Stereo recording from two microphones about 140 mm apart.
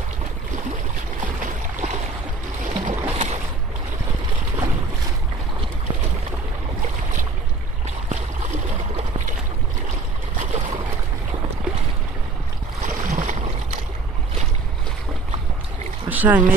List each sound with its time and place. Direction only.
1.2 s a sound: 70° right (ahead or behind)
2.6 s boat: 60° right (ahead or behind)
3.1 s boat: 45° right (ahead or behind)
8.1 s stream: 55° right (ahead or behind)
10.3 s a sound: 60° right (ahead or behind)
12.8 s boat: 60° right (ahead or behind)
16.1 s speech: 10° right (ahead or behind)